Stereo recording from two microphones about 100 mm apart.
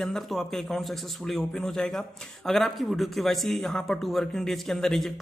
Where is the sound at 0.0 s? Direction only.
5° left (ahead or behind).